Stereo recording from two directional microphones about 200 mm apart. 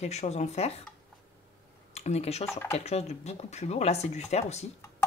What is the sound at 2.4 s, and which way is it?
Speech, 10° left (ahead or behind).